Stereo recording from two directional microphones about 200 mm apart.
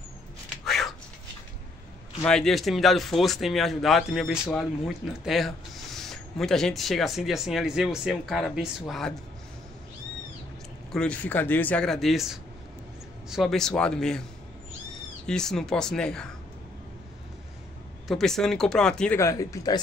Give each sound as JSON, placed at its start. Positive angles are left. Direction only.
{"t": 0.7, "sound": "a sound", "side_deg": 0}
{"t": 2.2, "sound": "a man's voice", "side_deg": 5}
{"t": 10.9, "sound": "a man's voice", "side_deg": 5}
{"t": 15.2, "sound": "a man's voice", "side_deg": 5}
{"t": 18.0, "sound": "a man's voice", "side_deg": 0}
{"t": 19.1, "sound": "speech", "side_deg": 15}